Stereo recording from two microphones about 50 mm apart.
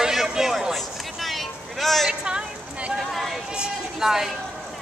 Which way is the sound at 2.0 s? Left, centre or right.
Centre.